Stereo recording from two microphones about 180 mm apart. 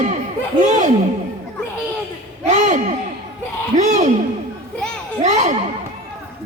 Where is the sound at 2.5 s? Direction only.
40° right (ahead or behind).